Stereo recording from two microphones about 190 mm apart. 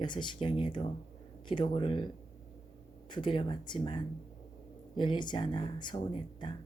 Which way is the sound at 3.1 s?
25° left (ahead or behind).